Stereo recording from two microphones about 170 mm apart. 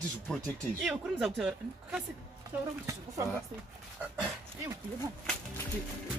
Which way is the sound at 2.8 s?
20° right (ahead or behind).